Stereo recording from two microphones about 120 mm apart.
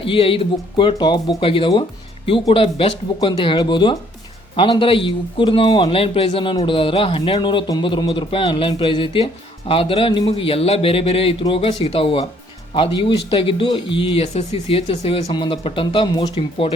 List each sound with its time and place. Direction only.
0.0 s speech: 50° left (ahead or behind)